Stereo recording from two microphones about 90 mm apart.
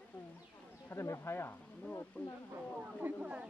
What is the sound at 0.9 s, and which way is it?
Speech, 30° left (ahead or behind).